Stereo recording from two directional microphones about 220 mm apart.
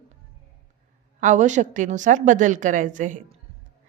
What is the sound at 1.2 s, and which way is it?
A woman's voice, 35° right (ahead or behind).